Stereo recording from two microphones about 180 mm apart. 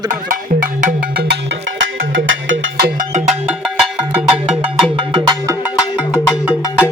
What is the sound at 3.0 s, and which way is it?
Music, 40° right (ahead or behind).